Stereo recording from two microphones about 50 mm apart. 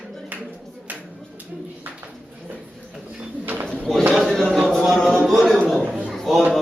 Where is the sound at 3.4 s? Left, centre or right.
Right.